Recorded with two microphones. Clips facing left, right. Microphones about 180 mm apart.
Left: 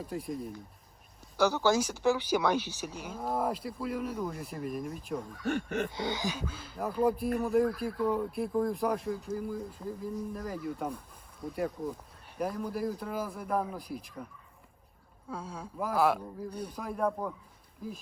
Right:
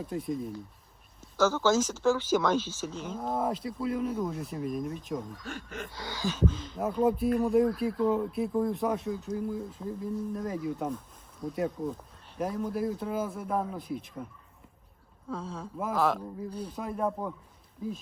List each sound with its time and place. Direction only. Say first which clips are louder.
0.0 s speech: right 3 dB; centre (ahead or behind)
1.4 s speech: right 1 dB; 15° left (ahead or behind)
5.4 s speech: left 8 dB; 60° left (ahead or behind)
6.0 s speech: right 3 dB; 20° left (ahead or behind); by 14.3 s centre (ahead or behind)
15.3 s speech: right 3 dB; 10° left (ahead or behind)
16.7 s speech: even; centre (ahead or behind)